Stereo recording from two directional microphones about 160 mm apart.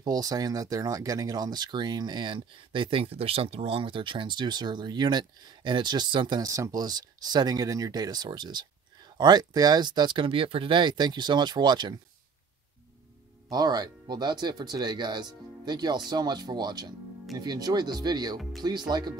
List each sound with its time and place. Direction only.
0.0 s speech: 25° right (ahead or behind)
13.5 s speech: 25° right (ahead or behind)